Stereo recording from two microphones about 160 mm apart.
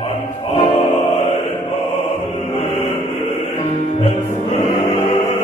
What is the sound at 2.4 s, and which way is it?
Music, 40° left (ahead or behind).